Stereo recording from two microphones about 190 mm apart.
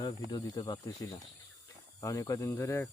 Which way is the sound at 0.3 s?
20° left (ahead or behind).